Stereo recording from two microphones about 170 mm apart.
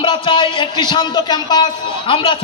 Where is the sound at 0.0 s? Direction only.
30° left (ahead or behind).